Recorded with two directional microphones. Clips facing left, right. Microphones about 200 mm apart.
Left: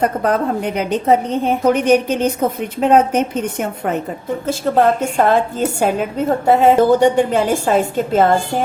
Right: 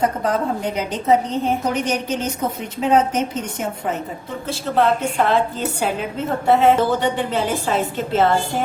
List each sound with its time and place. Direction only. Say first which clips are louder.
0.0 s a woman's voice: left 3 dB; 60° left (ahead or behind)
4.4 s a woman's voice: left 4 dB; 45° left (ahead or behind)